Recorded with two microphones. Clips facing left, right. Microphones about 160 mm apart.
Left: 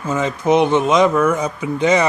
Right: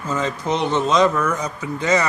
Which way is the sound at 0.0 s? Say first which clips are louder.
Left 4 dB; 10° left (ahead or behind).